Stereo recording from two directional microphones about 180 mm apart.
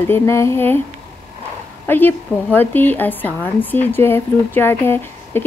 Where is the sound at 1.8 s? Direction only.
10° left (ahead or behind).